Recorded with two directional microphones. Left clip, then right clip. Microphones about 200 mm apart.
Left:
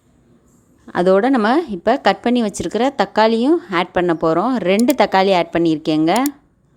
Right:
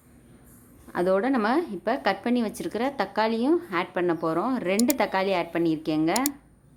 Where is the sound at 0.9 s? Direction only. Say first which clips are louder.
Left 10 dB; 35° left (ahead or behind).